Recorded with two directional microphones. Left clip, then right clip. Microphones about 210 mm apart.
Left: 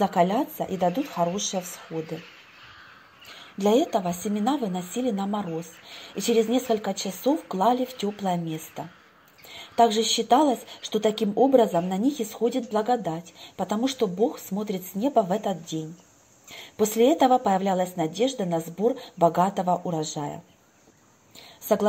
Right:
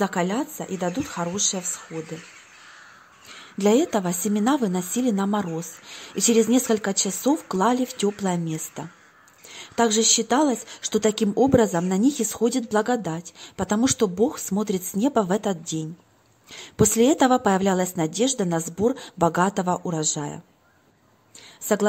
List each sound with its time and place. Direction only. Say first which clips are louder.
0.0 s a woman's voice: left 2 dB; 20° right (ahead or behind)
3.6 s a woman's voice: right 1 dB; 25° right (ahead or behind)